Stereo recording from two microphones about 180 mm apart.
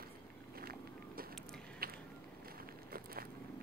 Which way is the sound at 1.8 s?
55° right (ahead or behind).